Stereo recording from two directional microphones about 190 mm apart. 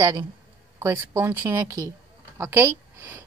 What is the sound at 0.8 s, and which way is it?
Speech, 10° right (ahead or behind).